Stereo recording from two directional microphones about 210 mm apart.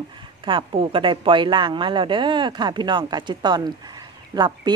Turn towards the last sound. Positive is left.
turn(degrees=-20)  # may be behind; listen again after turning